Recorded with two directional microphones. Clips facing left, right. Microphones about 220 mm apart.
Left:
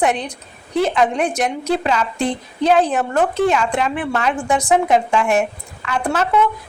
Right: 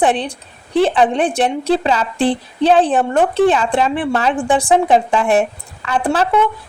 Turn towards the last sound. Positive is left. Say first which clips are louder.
# right 2 dB
turn(degrees=-30)  # may be behind; listen again after turning